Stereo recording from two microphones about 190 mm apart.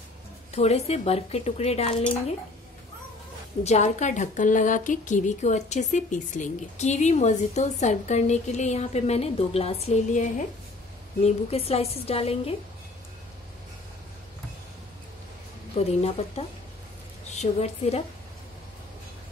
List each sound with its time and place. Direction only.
0.6 s speech: 35° left (ahead or behind)
3.6 s speech: 35° left (ahead or behind)
15.8 s speech: 30° left (ahead or behind)